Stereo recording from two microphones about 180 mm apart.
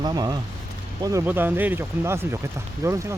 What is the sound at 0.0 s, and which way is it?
Speech, 20° right (ahead or behind).